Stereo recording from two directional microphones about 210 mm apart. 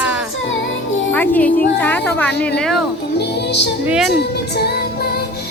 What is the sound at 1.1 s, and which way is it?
Speech, 10° left (ahead or behind).